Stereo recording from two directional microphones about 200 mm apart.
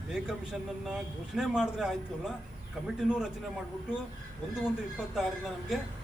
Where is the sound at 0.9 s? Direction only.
Centre (ahead or behind).